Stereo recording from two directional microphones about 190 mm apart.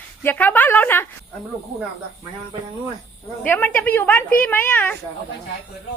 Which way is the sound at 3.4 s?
10° left (ahead or behind).